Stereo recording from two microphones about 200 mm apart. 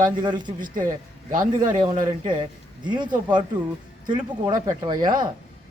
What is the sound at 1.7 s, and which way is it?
A man's voice, 20° right (ahead or behind).